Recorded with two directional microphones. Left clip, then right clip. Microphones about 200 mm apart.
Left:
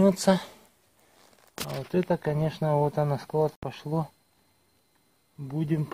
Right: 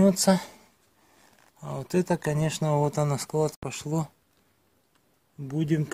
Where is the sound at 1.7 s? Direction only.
15° right (ahead or behind).